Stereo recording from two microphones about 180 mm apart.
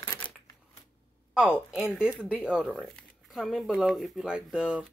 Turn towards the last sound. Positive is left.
turn(degrees=-5)  # may be behind; listen again after turning